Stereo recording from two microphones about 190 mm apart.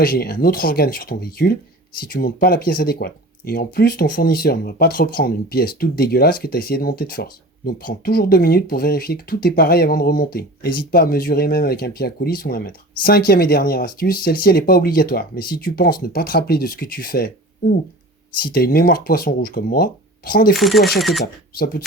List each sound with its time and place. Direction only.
0.0 s speech: 50° left (ahead or behind)
20.6 s speech: centre (ahead or behind)